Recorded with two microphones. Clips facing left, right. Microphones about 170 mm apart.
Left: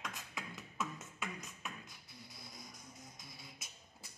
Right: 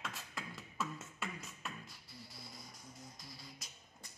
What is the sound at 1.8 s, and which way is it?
Beatboxing, 20° left (ahead or behind).